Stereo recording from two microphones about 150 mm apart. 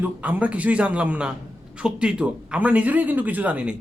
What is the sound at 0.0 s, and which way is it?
Speech, 10° right (ahead or behind).